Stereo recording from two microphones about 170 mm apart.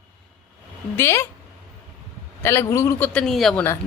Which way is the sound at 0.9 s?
15° left (ahead or behind).